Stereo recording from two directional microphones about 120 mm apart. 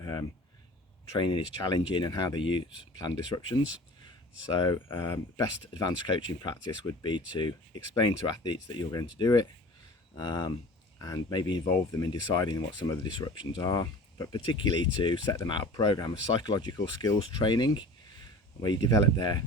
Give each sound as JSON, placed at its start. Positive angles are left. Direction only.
{"t": 0.0, "sound": "a sound", "side_deg": 30}
{"t": 1.2, "sound": "speech", "side_deg": 40}
{"t": 11.6, "sound": "speech", "side_deg": 25}
{"t": 12.3, "sound": "speech", "side_deg": 40}
{"t": 16.7, "sound": "speech", "side_deg": 25}